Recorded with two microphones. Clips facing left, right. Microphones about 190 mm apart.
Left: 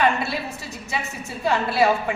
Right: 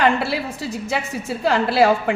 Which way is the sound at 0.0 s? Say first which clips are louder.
Right 3 dB; 90° right.